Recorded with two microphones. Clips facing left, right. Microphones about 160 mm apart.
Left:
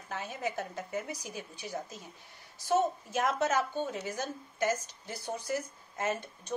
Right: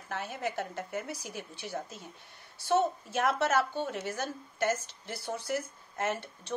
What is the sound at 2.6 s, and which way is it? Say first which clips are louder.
Speech: right 1 dB; 65° right (ahead or behind).